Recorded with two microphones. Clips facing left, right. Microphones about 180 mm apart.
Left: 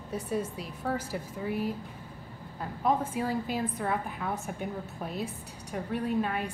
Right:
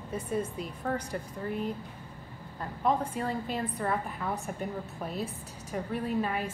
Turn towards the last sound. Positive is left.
turn(degrees=0)  # may be behind; listen again after turning